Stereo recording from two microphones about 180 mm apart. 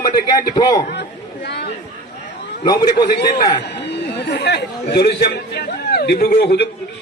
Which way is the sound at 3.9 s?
70° left (ahead or behind).